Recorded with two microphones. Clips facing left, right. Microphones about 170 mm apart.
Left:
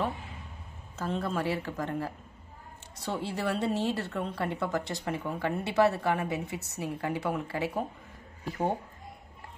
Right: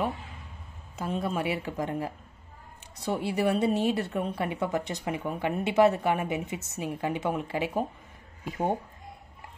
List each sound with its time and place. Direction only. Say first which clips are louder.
0.9 s a woman's voice: right 1 dB; 10° right (ahead or behind)